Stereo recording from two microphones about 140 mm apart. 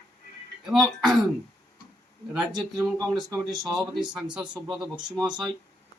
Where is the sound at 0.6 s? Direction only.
5° right (ahead or behind).